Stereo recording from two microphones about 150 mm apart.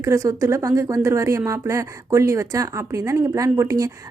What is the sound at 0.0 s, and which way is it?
Speech, 20° right (ahead or behind).